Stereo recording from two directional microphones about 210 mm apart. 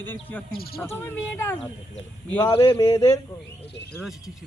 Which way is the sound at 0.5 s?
45° left (ahead or behind).